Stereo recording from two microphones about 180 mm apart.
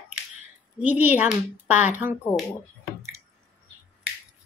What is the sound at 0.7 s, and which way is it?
A woman's voice, 10° right (ahead or behind).